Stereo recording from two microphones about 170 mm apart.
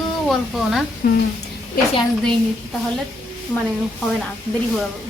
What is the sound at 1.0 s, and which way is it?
Speech, 60° left (ahead or behind).